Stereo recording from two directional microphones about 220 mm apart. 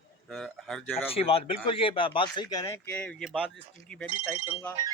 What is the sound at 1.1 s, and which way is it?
Speech, 25° left (ahead or behind).